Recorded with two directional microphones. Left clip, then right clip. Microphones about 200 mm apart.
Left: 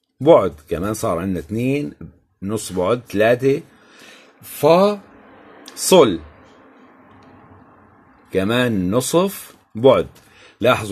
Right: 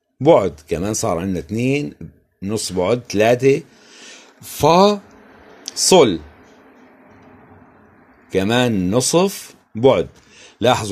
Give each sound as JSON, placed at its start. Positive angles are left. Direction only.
{"t": 0.2, "sound": "speech", "side_deg": -15}
{"t": 4.5, "sound": "speech", "side_deg": -35}
{"t": 5.6, "sound": "speech", "side_deg": -10}
{"t": 8.3, "sound": "speech", "side_deg": -15}